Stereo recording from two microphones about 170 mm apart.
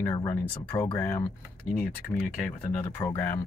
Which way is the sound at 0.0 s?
15° left (ahead or behind).